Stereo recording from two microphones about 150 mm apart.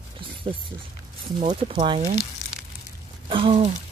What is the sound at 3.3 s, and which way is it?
Speech, 35° right (ahead or behind).